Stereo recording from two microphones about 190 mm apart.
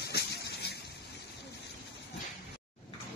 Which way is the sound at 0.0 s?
60° left (ahead or behind).